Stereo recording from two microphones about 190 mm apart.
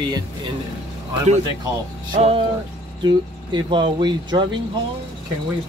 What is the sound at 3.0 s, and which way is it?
Speech, 25° right (ahead or behind).